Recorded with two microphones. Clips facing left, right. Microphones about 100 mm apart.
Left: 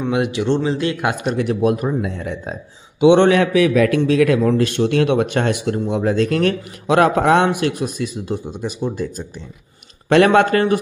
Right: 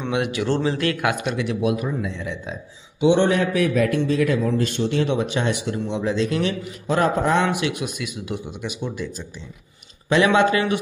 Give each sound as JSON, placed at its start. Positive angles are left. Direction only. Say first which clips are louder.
{"t": 0.1, "sound": "speech", "louder": "left 3 dB", "side_deg": 25}
{"t": 1.2, "sound": "a man's voice", "louder": "left 5 dB", "side_deg": 45}
{"t": 3.0, "sound": "a man's voice", "louder": "left 6 dB", "side_deg": 65}
{"t": 4.4, "sound": "a man's voice", "louder": "left 5 dB", "side_deg": 70}
{"t": 6.9, "sound": "a man's voice", "louder": "left 6 dB", "side_deg": 80}
{"t": 10.0, "sound": "a man's voice", "louder": "left 4 dB", "side_deg": 60}